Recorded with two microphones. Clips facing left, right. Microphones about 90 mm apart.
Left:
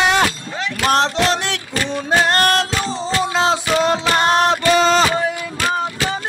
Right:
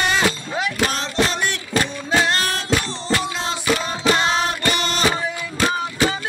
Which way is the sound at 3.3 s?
90° left.